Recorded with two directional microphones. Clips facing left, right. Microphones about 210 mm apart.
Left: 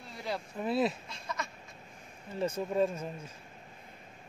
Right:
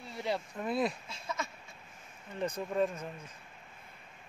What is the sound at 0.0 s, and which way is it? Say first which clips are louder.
Speech: right 2 dB; centre (ahead or behind).